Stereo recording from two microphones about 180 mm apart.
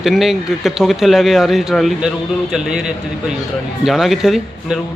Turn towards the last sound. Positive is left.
turn(degrees=-5)  # may be behind; listen again after turning